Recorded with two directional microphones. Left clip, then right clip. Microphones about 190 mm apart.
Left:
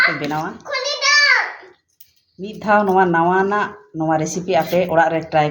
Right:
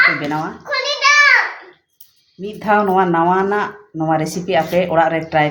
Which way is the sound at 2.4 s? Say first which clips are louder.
Right 1 dB; 25° left (ahead or behind).